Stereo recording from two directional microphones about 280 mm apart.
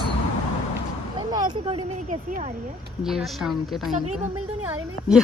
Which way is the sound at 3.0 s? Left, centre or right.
Centre.